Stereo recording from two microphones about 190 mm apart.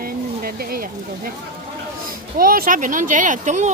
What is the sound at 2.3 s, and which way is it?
A child's voice, 50° right (ahead or behind).